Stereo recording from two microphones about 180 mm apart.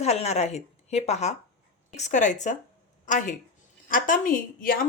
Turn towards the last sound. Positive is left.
turn(degrees=50)  # may be behind; listen again after turning